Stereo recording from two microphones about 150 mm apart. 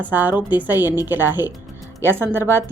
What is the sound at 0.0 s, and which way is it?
Speech, 10° right (ahead or behind).